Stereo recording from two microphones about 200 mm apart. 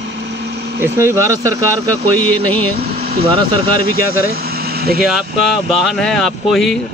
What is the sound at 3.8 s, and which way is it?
Speech, 50° right (ahead or behind).